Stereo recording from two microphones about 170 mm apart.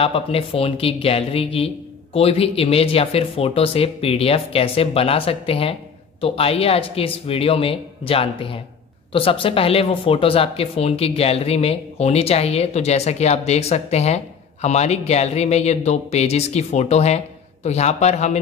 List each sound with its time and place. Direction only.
0.0 s speech: 35° left (ahead or behind)